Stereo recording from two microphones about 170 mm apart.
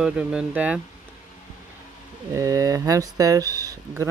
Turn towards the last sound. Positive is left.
turn(degrees=-20)  # may be behind; listen again after turning